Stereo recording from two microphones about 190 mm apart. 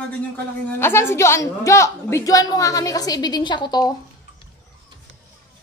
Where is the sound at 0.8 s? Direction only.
10° left (ahead or behind).